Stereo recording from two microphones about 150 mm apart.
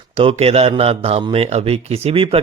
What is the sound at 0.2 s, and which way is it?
A man's voice, 40° right (ahead or behind).